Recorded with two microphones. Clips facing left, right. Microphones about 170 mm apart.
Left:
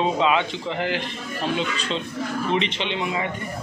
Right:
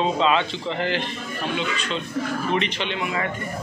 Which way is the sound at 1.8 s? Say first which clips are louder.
Right 1 dB; 30° left (ahead or behind).